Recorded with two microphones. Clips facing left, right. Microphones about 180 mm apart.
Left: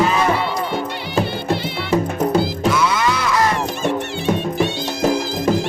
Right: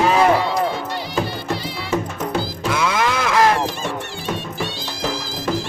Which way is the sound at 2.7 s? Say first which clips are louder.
Even; 55° right (ahead or behind).